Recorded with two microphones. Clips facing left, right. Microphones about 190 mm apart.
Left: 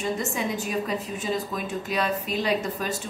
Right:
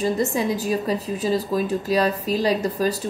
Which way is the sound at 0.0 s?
35° right (ahead or behind).